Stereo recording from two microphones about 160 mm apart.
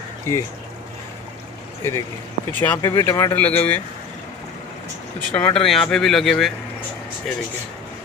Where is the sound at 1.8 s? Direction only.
20° left (ahead or behind).